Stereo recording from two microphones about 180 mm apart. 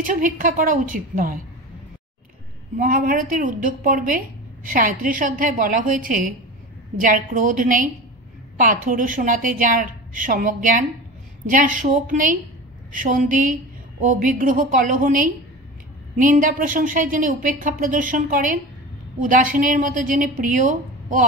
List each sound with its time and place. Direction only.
0.1 s speech: 50° right (ahead or behind)
2.8 s speech: 50° right (ahead or behind)